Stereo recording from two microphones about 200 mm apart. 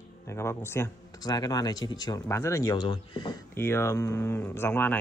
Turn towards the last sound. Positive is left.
turn(degrees=10)  # may be behind; listen again after turning